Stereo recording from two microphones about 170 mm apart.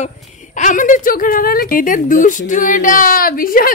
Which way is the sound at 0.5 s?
50° left (ahead or behind).